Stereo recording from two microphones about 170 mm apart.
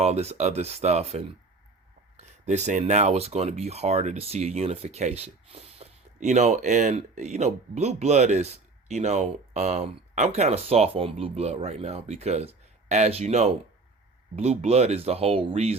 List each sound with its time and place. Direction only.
0.0 s speech: 40° right (ahead or behind)